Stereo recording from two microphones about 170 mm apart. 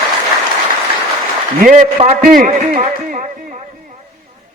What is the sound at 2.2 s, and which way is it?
Music, 55° right (ahead or behind).